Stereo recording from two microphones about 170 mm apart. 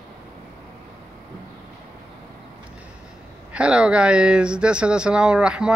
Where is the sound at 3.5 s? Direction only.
5° right (ahead or behind).